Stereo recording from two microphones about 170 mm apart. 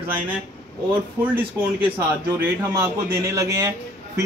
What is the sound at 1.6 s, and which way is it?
A man's voice, 15° right (ahead or behind).